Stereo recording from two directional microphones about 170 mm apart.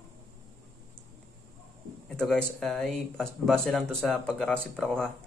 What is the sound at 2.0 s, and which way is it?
Speech, 5° left (ahead or behind).